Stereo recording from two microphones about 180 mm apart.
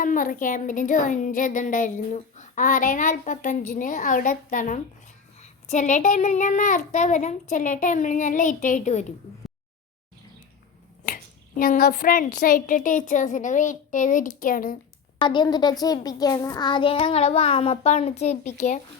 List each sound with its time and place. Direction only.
0.0 s speech: 45° left (ahead or behind)
11.0 s speech: 50° left (ahead or behind)
15.2 s a child's voice: 25° left (ahead or behind); by 18.8 s 40° left (ahead or behind)